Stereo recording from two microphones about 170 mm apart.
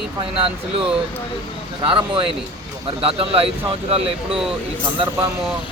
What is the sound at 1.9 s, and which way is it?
Speech, 30° right (ahead or behind).